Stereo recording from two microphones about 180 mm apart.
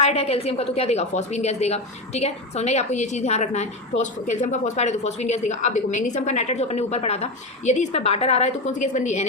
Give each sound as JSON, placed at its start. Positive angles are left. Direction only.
{"t": 0.0, "sound": "a woman's voice", "side_deg": 35}